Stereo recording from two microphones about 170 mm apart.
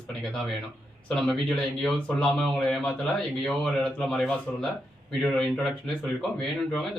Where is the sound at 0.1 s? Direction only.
5° left (ahead or behind).